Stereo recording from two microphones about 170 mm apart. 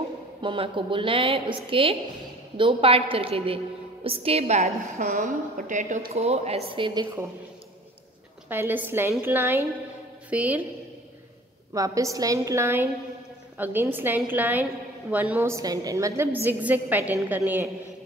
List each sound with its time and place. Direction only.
0.4 s a woman's voice: 30° right (ahead or behind)
4.9 s a woman's voice: 50° right (ahead or behind); by 7.1 s 25° right (ahead or behind)
8.5 s a woman's voice: 10° right (ahead or behind)
11.7 s a woman's voice: 20° right (ahead or behind)